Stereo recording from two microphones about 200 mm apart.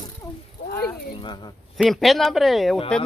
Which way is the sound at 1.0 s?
25° left (ahead or behind).